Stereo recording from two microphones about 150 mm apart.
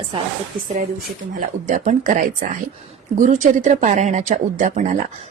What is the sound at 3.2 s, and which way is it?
Speech, 55° right (ahead or behind).